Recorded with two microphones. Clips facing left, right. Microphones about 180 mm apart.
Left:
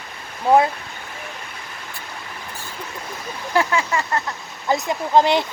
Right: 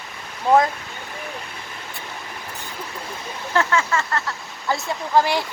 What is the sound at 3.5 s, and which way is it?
Speech, 15° left (ahead or behind).